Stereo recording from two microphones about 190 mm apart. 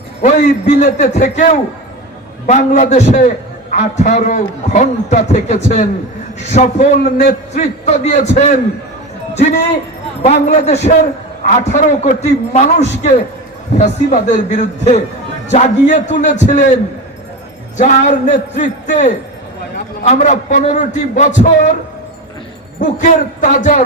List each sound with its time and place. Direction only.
0.2 s a man's voice: 40° left (ahead or behind)
17.7 s a man's voice: 40° left (ahead or behind)
20.1 s a man's voice: 40° left (ahead or behind)
22.8 s a man's voice: 40° left (ahead or behind)